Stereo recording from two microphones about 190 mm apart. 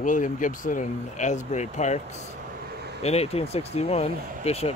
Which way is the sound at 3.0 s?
35° left (ahead or behind).